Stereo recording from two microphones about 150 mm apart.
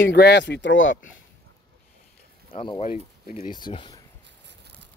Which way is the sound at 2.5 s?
40° left (ahead or behind).